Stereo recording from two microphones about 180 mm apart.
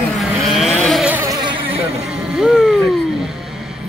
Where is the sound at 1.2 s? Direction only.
20° right (ahead or behind).